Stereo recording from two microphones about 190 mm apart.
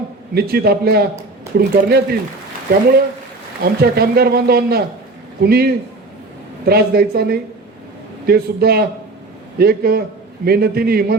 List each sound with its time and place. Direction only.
0.3 s a man's voice: 55° right (ahead or behind)
3.6 s a man's voice: 55° right (ahead or behind)